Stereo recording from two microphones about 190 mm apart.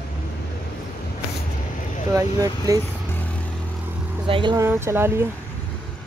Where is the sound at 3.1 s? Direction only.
10° left (ahead or behind).